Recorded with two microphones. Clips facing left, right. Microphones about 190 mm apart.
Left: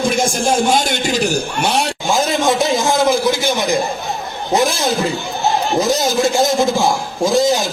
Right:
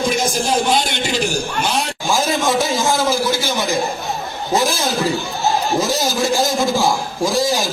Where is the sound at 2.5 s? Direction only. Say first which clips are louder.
Left 3 dB; 15° left (ahead or behind).